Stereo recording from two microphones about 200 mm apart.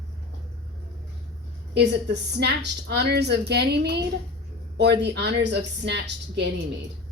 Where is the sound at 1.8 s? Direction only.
60° right (ahead or behind).